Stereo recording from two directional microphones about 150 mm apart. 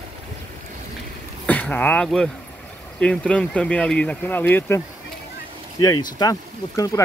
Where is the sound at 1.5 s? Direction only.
10° left (ahead or behind); by 6.3 s 25° left (ahead or behind).